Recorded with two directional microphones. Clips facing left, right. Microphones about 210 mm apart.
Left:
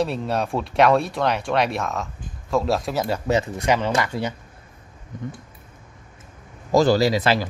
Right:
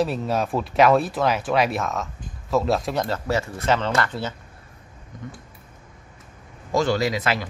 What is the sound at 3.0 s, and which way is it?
Speech, 15° left (ahead or behind).